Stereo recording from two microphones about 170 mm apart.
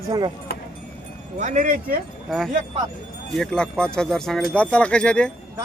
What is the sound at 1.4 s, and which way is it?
Speech, 45° right (ahead or behind).